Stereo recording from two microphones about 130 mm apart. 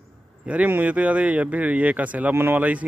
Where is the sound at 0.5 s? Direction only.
10° right (ahead or behind).